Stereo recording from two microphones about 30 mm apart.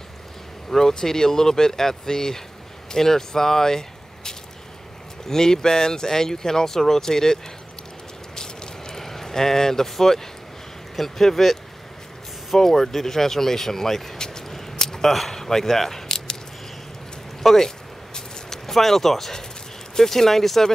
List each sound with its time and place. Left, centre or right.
0.7 s speech: centre
8.4 s a sound: centre
11.0 s speech: centre
12.5 s speech: centre
14.1 s vehicle: left
14.5 s a sound: centre
15.3 s speech: centre
17.4 s speech: centre